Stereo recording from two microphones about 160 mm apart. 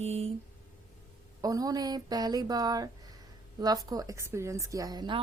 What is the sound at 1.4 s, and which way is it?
A woman's voice, 20° right (ahead or behind).